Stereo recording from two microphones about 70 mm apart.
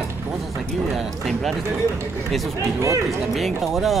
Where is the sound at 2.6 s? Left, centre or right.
Right.